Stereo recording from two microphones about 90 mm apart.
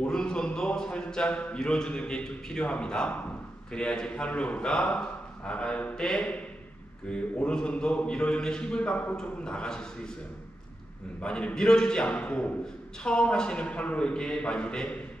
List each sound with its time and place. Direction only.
0.0 s speech: 10° left (ahead or behind)
11.1 s speech: 10° left (ahead or behind)